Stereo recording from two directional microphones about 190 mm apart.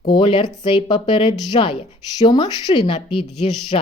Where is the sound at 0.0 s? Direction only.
25° left (ahead or behind).